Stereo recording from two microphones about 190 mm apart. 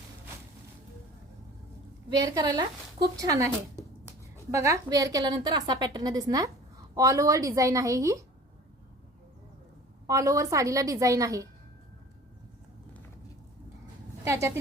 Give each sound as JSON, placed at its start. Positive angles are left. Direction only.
{"t": 2.3, "sound": "a woman's voice", "side_deg": -20}
{"t": 4.5, "sound": "a woman's voice", "side_deg": -15}
{"t": 10.1, "sound": "a woman's voice", "side_deg": -15}
{"t": 14.3, "sound": "a woman's voice", "side_deg": -15}